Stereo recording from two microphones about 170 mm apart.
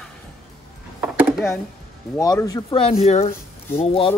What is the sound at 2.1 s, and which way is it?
Speech, 20° left (ahead or behind).